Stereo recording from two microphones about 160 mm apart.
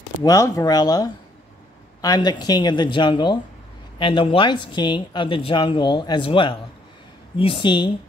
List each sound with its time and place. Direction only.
0.2 s speech: 20° left (ahead or behind)